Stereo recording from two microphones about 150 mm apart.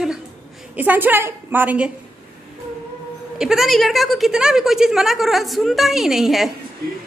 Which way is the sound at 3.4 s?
5° right (ahead or behind).